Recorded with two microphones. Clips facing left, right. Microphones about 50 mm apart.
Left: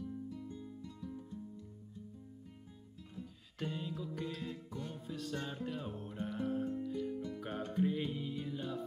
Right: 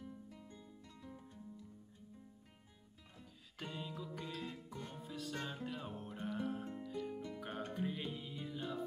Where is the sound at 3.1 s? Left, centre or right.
Centre.